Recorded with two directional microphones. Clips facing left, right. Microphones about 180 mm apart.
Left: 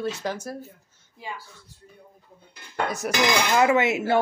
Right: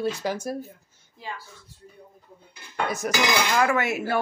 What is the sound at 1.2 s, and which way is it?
Speech, 15° left (ahead or behind).